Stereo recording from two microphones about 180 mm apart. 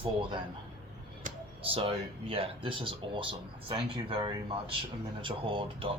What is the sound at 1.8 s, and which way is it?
Speech, 30° right (ahead or behind).